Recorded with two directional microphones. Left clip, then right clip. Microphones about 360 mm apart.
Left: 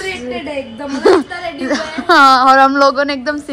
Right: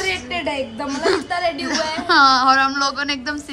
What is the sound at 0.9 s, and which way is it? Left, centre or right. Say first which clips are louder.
A woman's voice: left 9 dB; centre.